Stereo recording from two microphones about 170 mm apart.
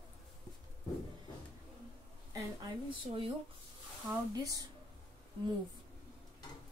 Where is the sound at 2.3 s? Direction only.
25° right (ahead or behind).